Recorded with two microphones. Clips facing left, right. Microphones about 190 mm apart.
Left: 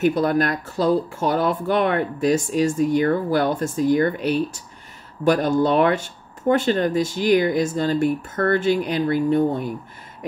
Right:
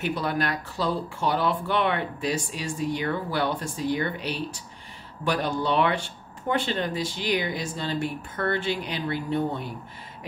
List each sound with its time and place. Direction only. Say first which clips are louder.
0.0 s speech: left 8 dB; 45° left (ahead or behind)